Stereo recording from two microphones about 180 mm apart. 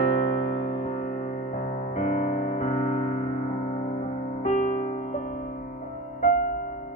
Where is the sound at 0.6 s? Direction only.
55° left (ahead or behind).